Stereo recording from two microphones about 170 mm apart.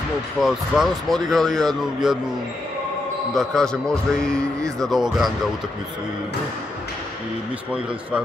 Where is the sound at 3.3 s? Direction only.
Centre (ahead or behind).